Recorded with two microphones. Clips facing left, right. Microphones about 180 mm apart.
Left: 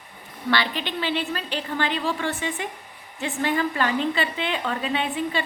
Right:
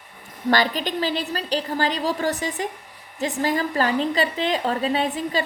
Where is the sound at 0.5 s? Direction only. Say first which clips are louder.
Right 4 dB; 40° right (ahead or behind).